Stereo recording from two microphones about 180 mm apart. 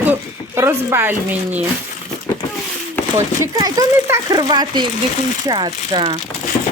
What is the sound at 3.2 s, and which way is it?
Speech, 15° right (ahead or behind).